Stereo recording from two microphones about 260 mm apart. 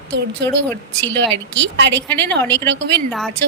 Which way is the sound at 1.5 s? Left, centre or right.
Right.